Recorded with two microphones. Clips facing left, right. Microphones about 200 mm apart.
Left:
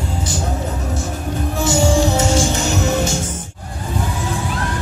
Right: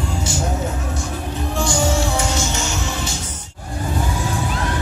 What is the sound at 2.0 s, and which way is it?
Music, 25° left (ahead or behind).